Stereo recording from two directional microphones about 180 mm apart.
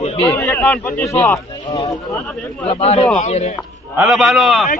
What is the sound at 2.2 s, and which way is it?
Speech, centre (ahead or behind).